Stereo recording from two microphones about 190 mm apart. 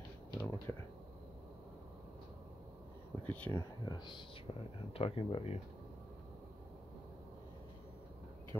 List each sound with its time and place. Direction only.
0.3 s whispering: 20° left (ahead or behind)
3.3 s speech: 10° left (ahead or behind)
3.8 s speech: 25° left (ahead or behind)